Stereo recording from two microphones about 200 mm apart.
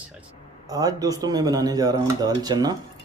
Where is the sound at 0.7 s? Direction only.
20° right (ahead or behind).